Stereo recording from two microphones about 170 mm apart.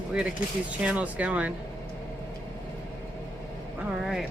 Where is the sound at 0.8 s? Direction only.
10° right (ahead or behind).